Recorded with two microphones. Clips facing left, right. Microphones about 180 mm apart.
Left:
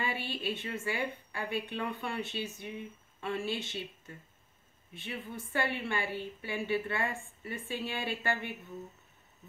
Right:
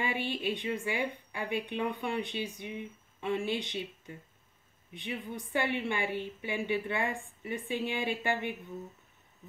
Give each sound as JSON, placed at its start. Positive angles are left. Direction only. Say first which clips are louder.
{"t": 0.0, "sound": "a woman's voice", "louder": "right 3 dB", "side_deg": -15}